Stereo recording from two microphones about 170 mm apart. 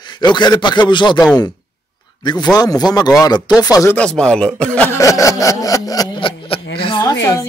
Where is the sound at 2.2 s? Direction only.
25° left (ahead or behind).